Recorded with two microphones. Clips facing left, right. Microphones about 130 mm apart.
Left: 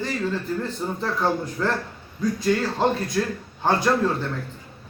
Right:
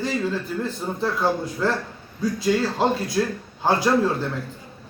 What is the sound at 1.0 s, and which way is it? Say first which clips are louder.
Speech: right 2 dB; 5° right (ahead or behind).